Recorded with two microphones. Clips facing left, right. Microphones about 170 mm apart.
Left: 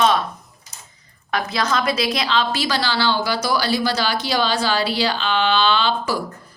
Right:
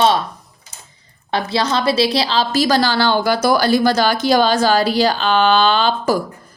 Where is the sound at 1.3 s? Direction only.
30° right (ahead or behind).